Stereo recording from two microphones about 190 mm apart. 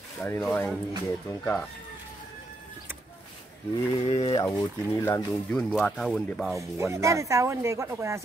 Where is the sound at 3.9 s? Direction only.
30° left (ahead or behind).